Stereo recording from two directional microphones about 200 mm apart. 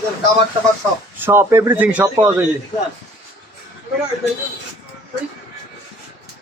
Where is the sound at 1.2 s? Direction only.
10° right (ahead or behind).